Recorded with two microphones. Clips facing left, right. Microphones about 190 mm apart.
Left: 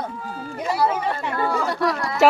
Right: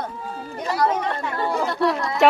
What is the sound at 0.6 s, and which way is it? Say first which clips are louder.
Speech: even; 5° left (ahead or behind).